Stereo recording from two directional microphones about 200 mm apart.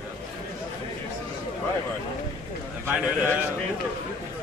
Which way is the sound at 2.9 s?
10° right (ahead or behind).